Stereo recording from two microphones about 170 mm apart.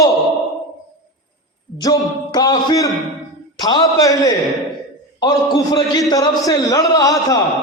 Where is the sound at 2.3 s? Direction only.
25° left (ahead or behind).